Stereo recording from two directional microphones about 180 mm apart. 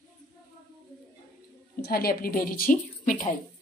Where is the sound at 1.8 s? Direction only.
55° left (ahead or behind).